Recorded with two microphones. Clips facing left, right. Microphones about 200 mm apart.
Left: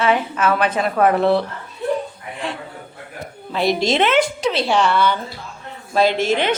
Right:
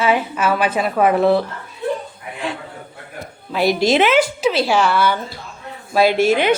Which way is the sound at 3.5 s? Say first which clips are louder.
Right 3 dB; 5° right (ahead or behind).